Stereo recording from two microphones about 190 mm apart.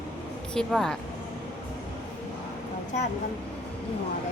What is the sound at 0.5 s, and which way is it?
Speech, 5° left (ahead or behind).